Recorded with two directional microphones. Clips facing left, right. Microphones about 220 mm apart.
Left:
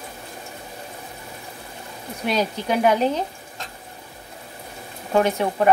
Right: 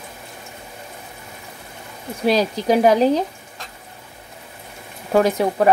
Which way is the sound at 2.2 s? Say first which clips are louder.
Right 6 dB; 35° right (ahead or behind).